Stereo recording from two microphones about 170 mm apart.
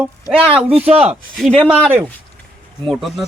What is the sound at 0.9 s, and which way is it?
Speech, 35° right (ahead or behind).